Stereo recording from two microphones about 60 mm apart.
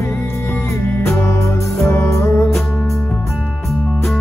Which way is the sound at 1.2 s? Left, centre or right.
Left.